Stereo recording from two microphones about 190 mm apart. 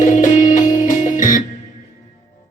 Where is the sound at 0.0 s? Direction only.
40° left (ahead or behind).